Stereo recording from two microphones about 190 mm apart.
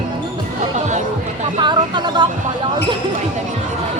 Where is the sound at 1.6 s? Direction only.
25° right (ahead or behind).